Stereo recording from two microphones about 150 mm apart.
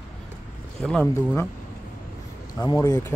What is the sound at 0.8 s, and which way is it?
Speech, 5° left (ahead or behind).